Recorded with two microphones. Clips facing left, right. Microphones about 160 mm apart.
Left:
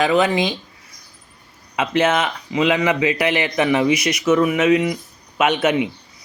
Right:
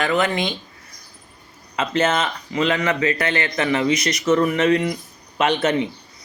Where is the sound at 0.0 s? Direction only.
15° left (ahead or behind).